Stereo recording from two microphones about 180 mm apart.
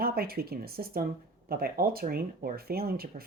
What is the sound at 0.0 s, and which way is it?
Speech, 55° right (ahead or behind).